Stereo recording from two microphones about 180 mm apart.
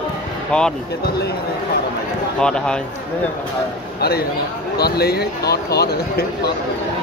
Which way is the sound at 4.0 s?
60° left (ahead or behind).